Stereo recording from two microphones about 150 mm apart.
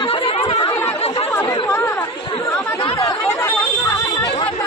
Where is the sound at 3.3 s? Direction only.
15° left (ahead or behind).